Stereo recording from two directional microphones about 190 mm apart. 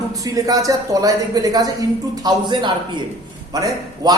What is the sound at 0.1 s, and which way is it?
A man's voice, 20° right (ahead or behind).